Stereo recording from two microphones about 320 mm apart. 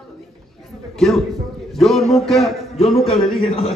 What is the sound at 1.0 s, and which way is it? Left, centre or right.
Speech, centre.